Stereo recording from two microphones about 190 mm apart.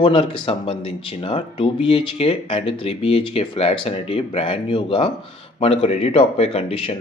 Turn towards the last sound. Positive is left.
turn(degrees=30)  # may be behind; listen again after turning